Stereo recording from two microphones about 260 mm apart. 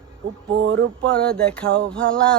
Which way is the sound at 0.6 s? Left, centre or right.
Right.